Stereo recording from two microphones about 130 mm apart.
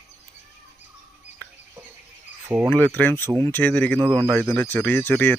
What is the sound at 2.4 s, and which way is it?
Speech, 10° right (ahead or behind).